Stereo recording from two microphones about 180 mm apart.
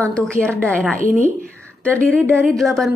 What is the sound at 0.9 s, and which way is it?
Speech, 45° right (ahead or behind).